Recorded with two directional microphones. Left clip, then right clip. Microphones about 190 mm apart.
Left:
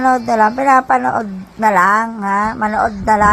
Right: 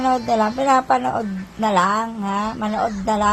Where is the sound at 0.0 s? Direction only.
25° left (ahead or behind).